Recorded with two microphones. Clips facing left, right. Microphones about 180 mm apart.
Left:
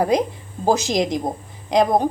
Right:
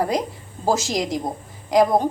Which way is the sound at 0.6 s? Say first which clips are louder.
Left 3 dB; 15° left (ahead or behind).